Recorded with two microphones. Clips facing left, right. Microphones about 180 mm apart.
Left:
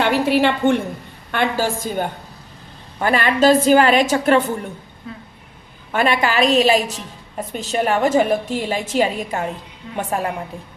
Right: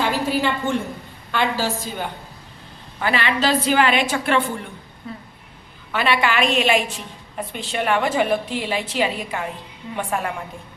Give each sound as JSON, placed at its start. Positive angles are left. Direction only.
{"t": 0.0, "sound": "a woman's voice", "side_deg": 70}
{"t": 1.3, "sound": "a woman's voice", "side_deg": 50}
{"t": 5.9, "sound": "a woman's voice", "side_deg": 45}